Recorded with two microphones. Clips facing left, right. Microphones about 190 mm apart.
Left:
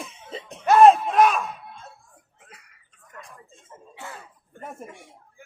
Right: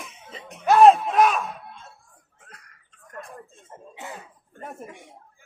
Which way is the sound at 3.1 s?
55° right (ahead or behind).